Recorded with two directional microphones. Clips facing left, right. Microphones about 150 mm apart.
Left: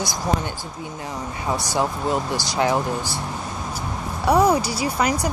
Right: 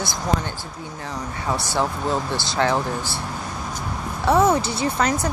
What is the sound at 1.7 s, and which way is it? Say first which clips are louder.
Speech: left 1 dB; 15° left (ahead or behind).